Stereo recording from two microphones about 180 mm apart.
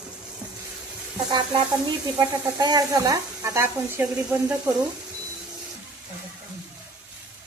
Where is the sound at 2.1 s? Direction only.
20° right (ahead or behind).